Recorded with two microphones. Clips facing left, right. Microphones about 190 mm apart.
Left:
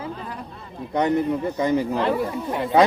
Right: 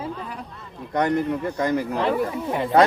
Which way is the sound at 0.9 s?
5° left (ahead or behind).